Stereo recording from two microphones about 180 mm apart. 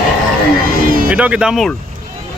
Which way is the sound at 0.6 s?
55° right (ahead or behind).